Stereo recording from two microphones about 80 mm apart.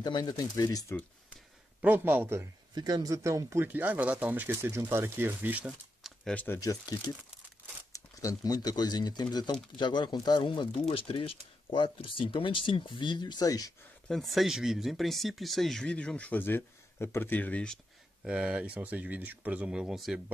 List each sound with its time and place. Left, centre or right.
0.0 s speech: left
1.8 s speech: right
2.7 s speech: right
3.6 s speech: right
4.6 s speech: right
5.7 s a sound: centre
6.3 s speech: left
6.6 s speech: left
8.2 s speech: left
9.8 s speech: left
11.7 s speech: left
14.0 s speech: centre
18.2 s speech: centre